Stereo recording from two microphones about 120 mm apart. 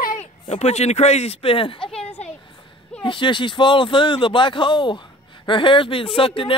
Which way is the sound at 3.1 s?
45° left (ahead or behind).